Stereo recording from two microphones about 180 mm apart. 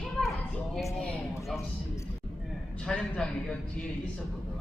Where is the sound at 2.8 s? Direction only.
5° left (ahead or behind).